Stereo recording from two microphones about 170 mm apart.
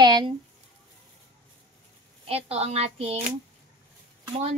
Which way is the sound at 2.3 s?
35° right (ahead or behind).